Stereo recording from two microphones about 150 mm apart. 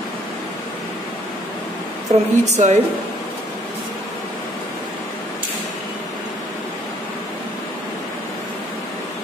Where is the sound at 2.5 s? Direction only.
50° right (ahead or behind).